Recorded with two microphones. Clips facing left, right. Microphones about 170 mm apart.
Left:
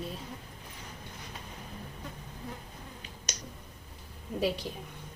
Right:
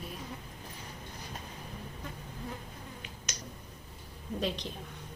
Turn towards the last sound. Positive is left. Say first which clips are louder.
# left 4 dB
turn(degrees=10)  # may be behind; listen again after turning